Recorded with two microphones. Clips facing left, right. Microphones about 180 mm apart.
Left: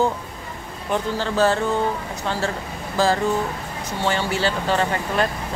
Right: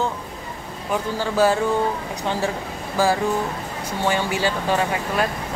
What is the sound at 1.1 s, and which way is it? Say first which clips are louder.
Speech: right 2 dB; 10° right (ahead or behind).